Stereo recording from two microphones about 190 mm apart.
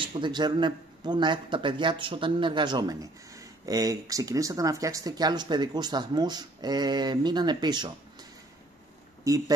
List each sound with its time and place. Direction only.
0.0 s speech: 25° right (ahead or behind)